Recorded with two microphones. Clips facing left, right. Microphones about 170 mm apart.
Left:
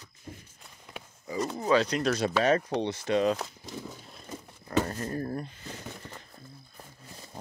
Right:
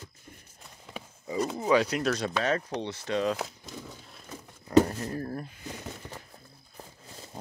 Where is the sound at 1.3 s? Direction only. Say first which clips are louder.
Right 1 dB; 5° right (ahead or behind).